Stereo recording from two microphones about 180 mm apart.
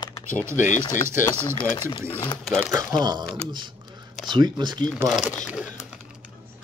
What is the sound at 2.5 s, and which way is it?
Speech, centre (ahead or behind).